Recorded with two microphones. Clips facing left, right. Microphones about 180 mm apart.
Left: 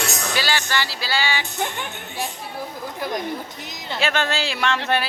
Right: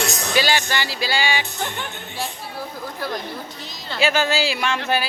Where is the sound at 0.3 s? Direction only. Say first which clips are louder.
Right 4 dB; 15° right (ahead or behind).